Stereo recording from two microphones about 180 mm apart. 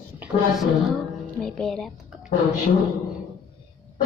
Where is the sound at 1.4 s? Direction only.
Centre (ahead or behind).